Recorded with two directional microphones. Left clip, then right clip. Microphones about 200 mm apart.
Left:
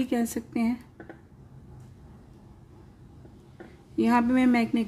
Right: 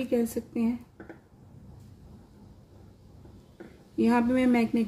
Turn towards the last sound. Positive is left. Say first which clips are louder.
# left 1 dB
turn(degrees=20)  # may be behind; listen again after turning